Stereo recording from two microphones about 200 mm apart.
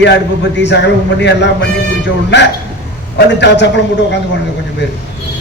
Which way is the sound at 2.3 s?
60° left (ahead or behind).